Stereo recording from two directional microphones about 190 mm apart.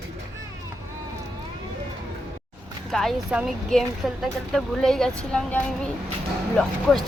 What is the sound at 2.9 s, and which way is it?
Speech, 5° right (ahead or behind).